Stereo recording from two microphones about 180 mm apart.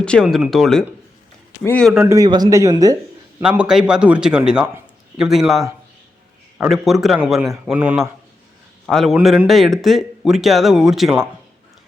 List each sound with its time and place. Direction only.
0.0 s speech: 5° left (ahead or behind)
1.9 s speech: 5° right (ahead or behind)
2.1 s speech: 20° right (ahead or behind)
3.4 s a man's voice: 5° right (ahead or behind)